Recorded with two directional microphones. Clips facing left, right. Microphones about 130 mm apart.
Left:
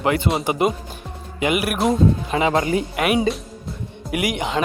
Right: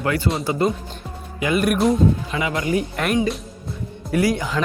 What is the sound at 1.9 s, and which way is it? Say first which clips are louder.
Speech: left 1 dB; 30° left (ahead or behind).